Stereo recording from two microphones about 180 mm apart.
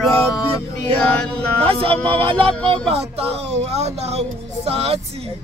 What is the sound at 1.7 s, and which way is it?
Speech, 30° right (ahead or behind).